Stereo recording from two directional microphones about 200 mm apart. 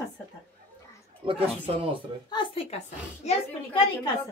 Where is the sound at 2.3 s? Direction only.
25° left (ahead or behind).